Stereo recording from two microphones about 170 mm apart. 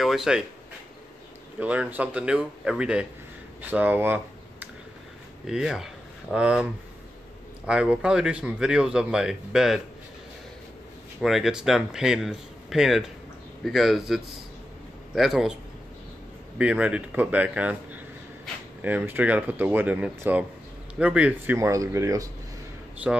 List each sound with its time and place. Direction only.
0.0 s a sound: centre (ahead or behind)
1.6 s speech: 10° right (ahead or behind)
11.1 s speech: centre (ahead or behind)
16.5 s speech: 5° right (ahead or behind)